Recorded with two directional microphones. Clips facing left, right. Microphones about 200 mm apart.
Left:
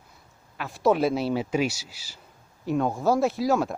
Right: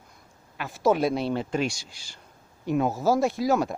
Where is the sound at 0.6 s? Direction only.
Centre (ahead or behind).